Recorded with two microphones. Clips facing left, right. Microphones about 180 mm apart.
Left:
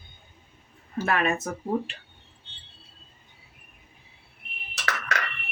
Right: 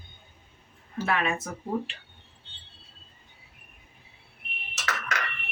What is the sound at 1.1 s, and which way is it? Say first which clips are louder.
Speech: left 3 dB; 45° left (ahead or behind).